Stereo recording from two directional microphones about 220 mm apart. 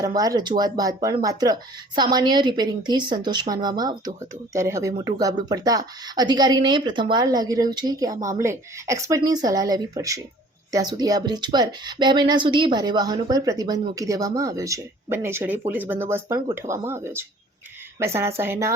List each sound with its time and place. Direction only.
0.0 s a woman's voice: 15° right (ahead or behind)